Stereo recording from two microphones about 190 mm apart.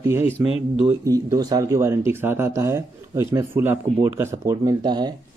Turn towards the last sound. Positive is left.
turn(degrees=-25)  # may be behind; listen again after turning